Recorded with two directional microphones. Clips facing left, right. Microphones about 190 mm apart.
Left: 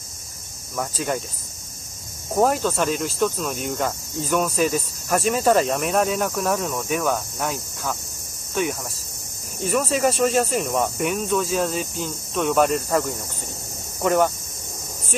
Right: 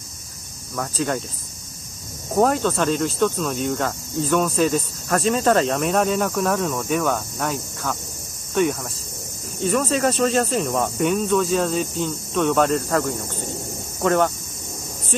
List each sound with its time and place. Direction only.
0.7 s speech: 10° left (ahead or behind)
2.3 s cricket: 5° left (ahead or behind)
9.7 s cricket: 5° left (ahead or behind)
14.0 s speech: 5° left (ahead or behind)